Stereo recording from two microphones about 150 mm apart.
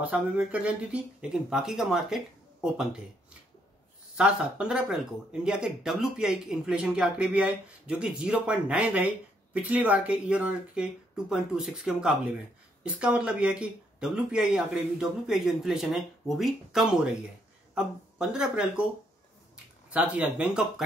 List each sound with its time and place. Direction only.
0.0 s speech: 10° right (ahead or behind)
4.2 s speech: 5° right (ahead or behind)